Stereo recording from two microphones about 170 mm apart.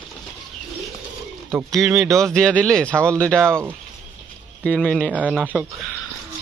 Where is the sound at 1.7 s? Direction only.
Centre (ahead or behind).